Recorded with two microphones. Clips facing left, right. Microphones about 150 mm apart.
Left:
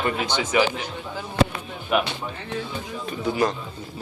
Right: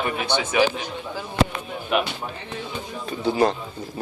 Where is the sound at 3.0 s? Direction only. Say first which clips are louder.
Right 3 dB; 35° right (ahead or behind).